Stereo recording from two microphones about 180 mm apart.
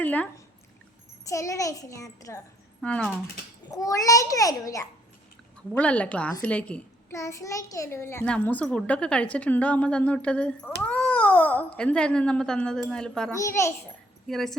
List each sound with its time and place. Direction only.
0.0 s a child's voice: 10° left (ahead or behind)
2.8 s speech: 5° left (ahead or behind)
3.7 s a child's voice: 20° left (ahead or behind)
5.7 s a child's voice: 5° left (ahead or behind)
13.3 s a child's voice: 15° left (ahead or behind)
14.3 s speech: centre (ahead or behind)